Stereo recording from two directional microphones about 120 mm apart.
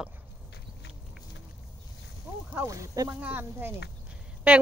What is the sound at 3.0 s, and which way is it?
A woman's voice, 15° right (ahead or behind).